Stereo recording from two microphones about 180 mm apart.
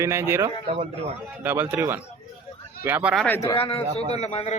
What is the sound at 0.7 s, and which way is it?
Speech, 35° right (ahead or behind).